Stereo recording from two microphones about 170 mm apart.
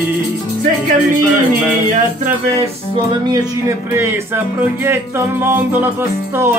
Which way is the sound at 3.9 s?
15° right (ahead or behind).